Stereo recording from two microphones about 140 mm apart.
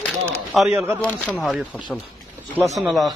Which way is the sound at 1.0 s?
10° left (ahead or behind).